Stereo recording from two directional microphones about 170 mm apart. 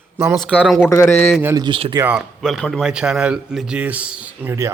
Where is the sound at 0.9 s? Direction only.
15° left (ahead or behind).